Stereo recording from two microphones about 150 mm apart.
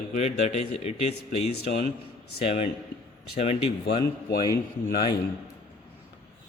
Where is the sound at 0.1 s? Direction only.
50° left (ahead or behind).